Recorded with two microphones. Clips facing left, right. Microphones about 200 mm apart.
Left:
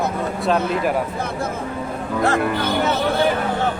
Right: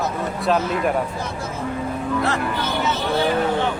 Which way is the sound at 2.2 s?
45° left (ahead or behind).